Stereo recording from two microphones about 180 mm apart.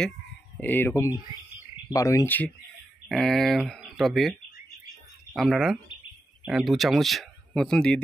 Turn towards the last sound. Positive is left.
turn(degrees=5)  # may be behind; listen again after turning